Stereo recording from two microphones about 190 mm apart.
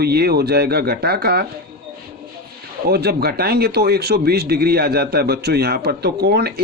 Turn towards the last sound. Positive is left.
turn(degrees=-60)  # may be behind; listen again after turning